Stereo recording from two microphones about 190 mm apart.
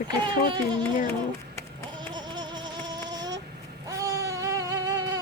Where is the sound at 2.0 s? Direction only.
25° right (ahead or behind).